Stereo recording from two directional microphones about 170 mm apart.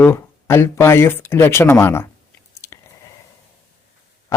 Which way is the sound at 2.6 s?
15° left (ahead or behind).